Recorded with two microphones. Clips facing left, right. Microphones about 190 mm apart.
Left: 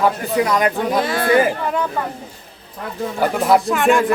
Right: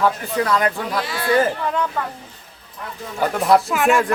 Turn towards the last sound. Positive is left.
turn(degrees=0)  # may be behind; listen again after turning